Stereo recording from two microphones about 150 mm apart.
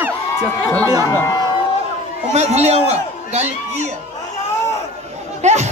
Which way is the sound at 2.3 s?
45° right (ahead or behind).